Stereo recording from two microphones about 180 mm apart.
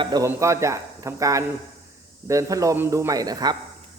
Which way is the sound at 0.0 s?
20° right (ahead or behind).